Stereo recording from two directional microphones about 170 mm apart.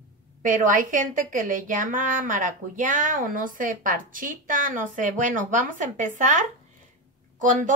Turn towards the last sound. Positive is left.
turn(degrees=-50)  # may be behind; listen again after turning